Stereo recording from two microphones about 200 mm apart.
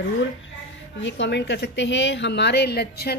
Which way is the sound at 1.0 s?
65° left (ahead or behind).